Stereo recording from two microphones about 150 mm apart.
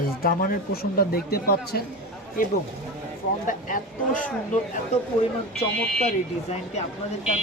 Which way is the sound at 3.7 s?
65° left (ahead or behind).